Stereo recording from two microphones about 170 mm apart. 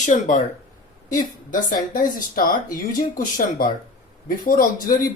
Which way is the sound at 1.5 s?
55° left (ahead or behind).